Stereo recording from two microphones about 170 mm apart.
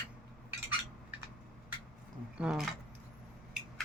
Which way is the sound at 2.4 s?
5° right (ahead or behind).